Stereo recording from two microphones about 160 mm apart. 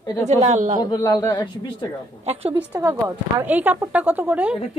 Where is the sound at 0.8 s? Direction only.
25° left (ahead or behind).